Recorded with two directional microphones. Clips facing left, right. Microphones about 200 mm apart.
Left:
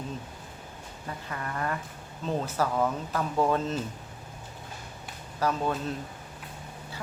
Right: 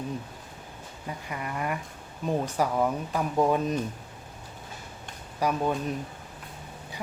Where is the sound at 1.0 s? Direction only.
15° right (ahead or behind).